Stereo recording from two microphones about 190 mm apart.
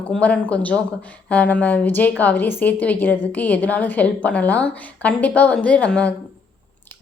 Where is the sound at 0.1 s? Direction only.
5° left (ahead or behind).